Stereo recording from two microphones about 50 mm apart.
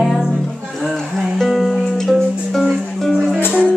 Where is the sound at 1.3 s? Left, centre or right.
Centre.